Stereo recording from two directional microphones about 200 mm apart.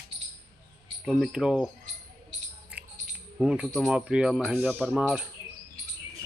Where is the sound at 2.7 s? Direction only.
5° right (ahead or behind).